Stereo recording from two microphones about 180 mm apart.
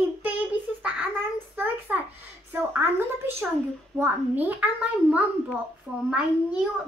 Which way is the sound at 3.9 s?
10° right (ahead or behind).